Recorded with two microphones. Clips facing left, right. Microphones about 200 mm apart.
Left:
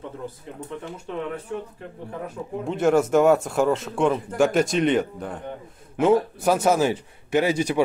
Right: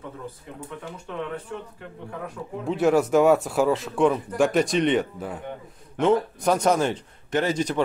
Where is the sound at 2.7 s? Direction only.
Centre (ahead or behind).